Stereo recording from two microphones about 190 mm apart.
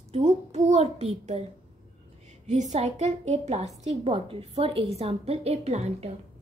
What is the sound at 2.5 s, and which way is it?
A woman's voice, 40° right (ahead or behind).